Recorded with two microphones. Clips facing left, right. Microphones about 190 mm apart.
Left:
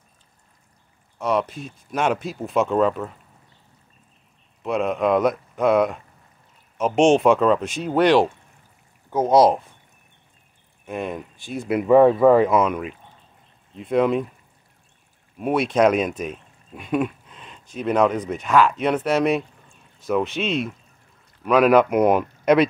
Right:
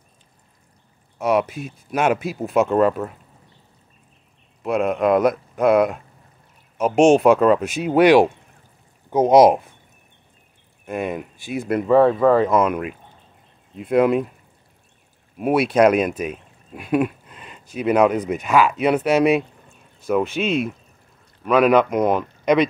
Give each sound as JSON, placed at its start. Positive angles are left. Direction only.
{"t": 1.1, "sound": "speech", "side_deg": -10}
{"t": 4.6, "sound": "speech", "side_deg": 0}
{"t": 10.9, "sound": "speech", "side_deg": -5}
{"t": 11.8, "sound": "speech", "side_deg": 10}
{"t": 15.3, "sound": "speech", "side_deg": -5}